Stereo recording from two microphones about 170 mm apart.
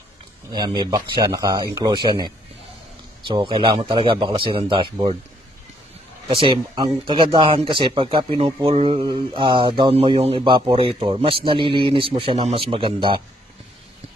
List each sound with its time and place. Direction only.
0.5 s speech: 25° right (ahead or behind)
6.2 s speech: 30° right (ahead or behind)